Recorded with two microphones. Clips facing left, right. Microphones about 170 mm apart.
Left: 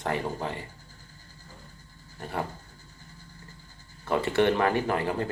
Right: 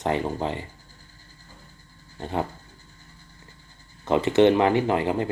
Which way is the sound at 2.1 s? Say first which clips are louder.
Right 5 dB; 25° right (ahead or behind).